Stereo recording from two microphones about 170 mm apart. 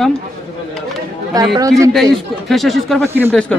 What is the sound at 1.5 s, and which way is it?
Speech, 20° right (ahead or behind).